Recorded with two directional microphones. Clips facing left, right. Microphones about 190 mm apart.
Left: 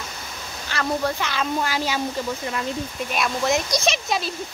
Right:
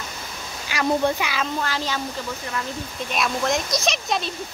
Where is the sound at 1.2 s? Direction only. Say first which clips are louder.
Even; 5° right (ahead or behind).